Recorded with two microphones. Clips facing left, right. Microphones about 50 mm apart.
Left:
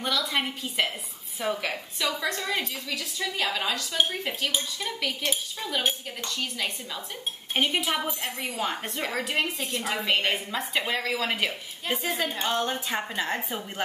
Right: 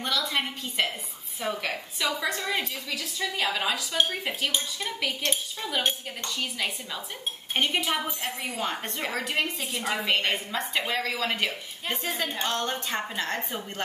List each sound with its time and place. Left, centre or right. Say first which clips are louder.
0.0 s speech: left 1 dB; centre